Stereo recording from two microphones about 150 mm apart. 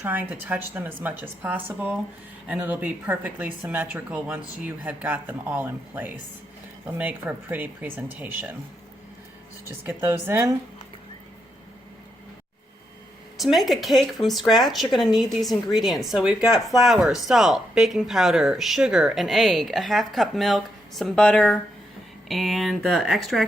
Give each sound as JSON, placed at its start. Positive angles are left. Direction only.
{"t": 0.0, "sound": "a woman's voice", "side_deg": -15}
{"t": 9.6, "sound": "a woman's voice", "side_deg": -15}
{"t": 13.4, "sound": "speech", "side_deg": 0}